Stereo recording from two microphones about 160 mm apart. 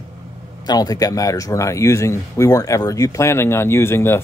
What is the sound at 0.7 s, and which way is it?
A man's voice, 25° left (ahead or behind).